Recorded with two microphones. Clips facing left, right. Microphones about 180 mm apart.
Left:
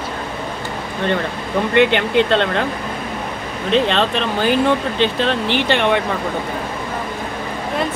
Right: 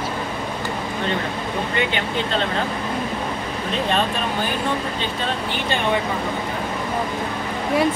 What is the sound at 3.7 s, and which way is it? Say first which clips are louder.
Speech: left 6 dB; 90° left.